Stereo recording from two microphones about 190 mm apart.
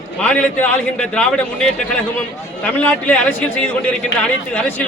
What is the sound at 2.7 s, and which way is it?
A man's voice, 5° left (ahead or behind).